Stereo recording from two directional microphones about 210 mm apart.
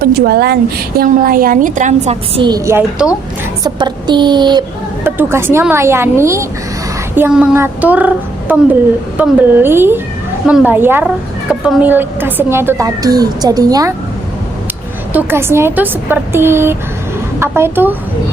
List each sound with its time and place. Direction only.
0.0 s a woman's voice: 45° right (ahead or behind); by 4.6 s 20° right (ahead or behind)
5.0 s a woman's voice: 10° right (ahead or behind)
15.1 s a woman's voice: 10° right (ahead or behind)